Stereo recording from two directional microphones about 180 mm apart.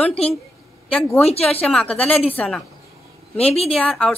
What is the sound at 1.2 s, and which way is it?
Speech, 35° left (ahead or behind).